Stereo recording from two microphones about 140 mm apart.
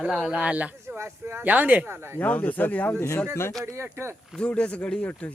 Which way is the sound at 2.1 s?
10° left (ahead or behind).